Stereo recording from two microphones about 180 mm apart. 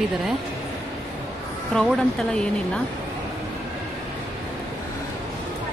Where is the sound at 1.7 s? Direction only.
5° left (ahead or behind).